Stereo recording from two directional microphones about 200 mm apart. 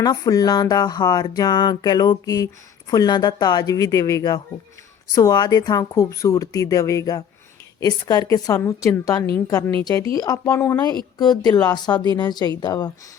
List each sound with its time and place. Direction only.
0.0 s speech: 20° left (ahead or behind)